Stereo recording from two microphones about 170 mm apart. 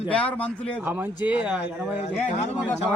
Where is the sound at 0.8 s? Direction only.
10° right (ahead or behind).